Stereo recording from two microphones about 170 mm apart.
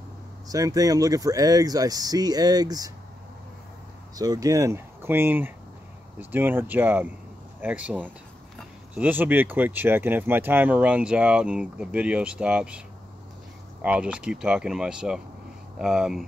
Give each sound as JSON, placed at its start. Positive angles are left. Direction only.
{"t": 0.5, "sound": "speech", "side_deg": -20}
{"t": 4.1, "sound": "speech", "side_deg": -20}
{"t": 13.8, "sound": "speech", "side_deg": -5}